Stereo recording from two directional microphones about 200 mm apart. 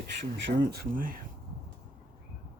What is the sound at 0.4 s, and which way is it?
Speech, 50° right (ahead or behind).